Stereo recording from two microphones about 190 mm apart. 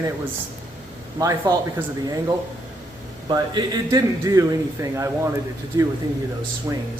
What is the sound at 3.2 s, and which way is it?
A man's voice, 20° right (ahead or behind).